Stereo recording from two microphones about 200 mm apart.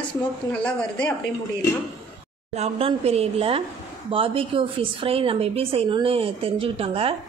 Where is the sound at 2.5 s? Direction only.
30° right (ahead or behind).